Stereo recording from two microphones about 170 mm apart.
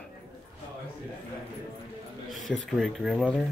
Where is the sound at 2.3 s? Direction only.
Centre (ahead or behind).